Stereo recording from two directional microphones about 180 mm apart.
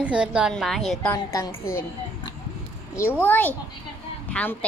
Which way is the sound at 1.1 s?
20° left (ahead or behind).